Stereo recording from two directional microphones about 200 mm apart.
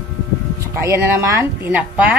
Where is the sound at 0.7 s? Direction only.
15° right (ahead or behind).